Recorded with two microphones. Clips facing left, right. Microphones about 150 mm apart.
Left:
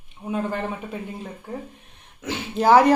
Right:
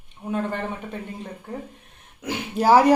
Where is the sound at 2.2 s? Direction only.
10° right (ahead or behind).